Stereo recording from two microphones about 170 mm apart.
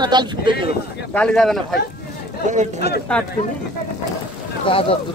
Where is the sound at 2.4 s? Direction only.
45° right (ahead or behind).